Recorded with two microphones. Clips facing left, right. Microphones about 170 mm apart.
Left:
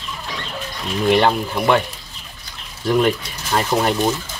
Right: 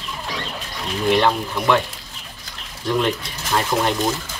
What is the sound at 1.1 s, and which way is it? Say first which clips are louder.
Speech: left 2 dB; 10° left (ahead or behind).